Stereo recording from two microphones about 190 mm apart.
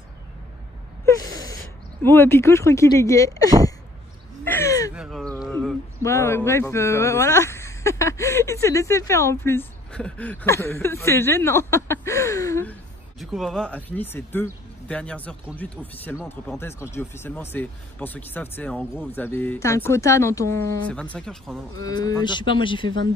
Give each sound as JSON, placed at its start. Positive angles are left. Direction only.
{"t": 2.0, "sound": "speech", "side_deg": 10}
{"t": 4.5, "sound": "a sound", "side_deg": 15}
{"t": 4.9, "sound": "a sound", "side_deg": 0}
{"t": 6.0, "sound": "speech", "side_deg": 15}
{"t": 13.2, "sound": "speech", "side_deg": 0}
{"t": 21.8, "sound": "speech", "side_deg": 20}